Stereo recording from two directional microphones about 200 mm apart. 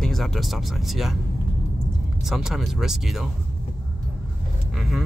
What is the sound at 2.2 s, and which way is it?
Speech, centre (ahead or behind).